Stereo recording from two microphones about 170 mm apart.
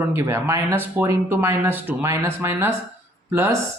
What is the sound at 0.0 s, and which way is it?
Speech, 15° right (ahead or behind).